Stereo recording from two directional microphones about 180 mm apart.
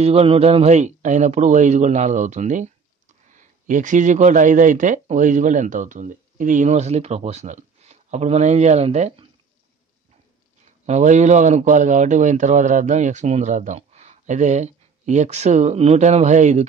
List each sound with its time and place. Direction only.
0.0 s speech: 35° right (ahead or behind)
10.9 s speech: 40° right (ahead or behind)